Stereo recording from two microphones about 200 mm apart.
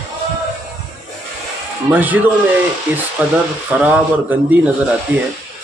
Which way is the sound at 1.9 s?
10° right (ahead or behind).